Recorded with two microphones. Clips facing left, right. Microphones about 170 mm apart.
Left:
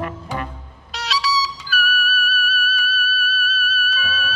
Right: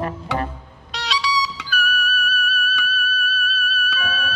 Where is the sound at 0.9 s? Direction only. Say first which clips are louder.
Left 1 dB; centre (ahead or behind).